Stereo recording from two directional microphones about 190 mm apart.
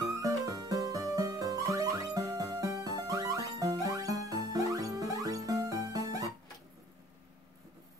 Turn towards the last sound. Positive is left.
turn(degrees=-20)  # may be behind; listen again after turning